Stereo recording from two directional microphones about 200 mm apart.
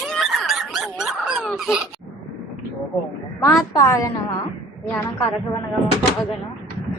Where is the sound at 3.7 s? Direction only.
15° left (ahead or behind).